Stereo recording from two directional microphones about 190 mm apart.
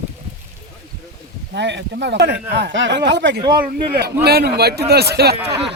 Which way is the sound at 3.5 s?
50° right (ahead or behind).